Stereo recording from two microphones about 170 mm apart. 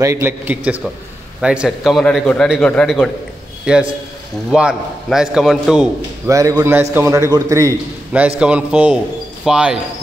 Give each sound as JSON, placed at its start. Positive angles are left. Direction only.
{"t": 0.0, "sound": "a man's voice", "side_deg": -15}
{"t": 6.2, "sound": "a man's voice", "side_deg": -20}
{"t": 8.4, "sound": "a man's voice", "side_deg": -5}